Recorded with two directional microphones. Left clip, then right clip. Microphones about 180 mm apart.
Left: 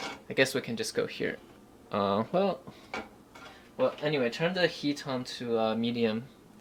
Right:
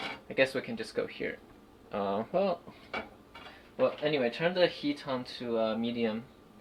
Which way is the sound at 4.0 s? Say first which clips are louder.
Even; 35° left (ahead or behind).